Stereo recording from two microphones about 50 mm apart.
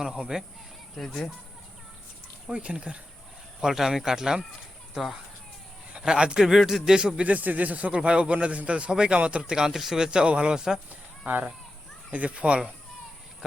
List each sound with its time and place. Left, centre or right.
0.0 s speech: centre
0.9 s speech: centre
2.5 s a man's voice: right
3.6 s speech: centre
5.9 s a man's voice: centre
7.3 s a man's voice: right; by 10.8 s centre
11.3 s a man's voice: right